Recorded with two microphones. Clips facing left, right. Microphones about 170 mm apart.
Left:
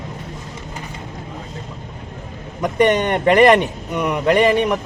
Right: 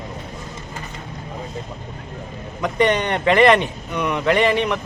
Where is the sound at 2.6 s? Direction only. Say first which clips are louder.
Left 3 dB; 45° left (ahead or behind).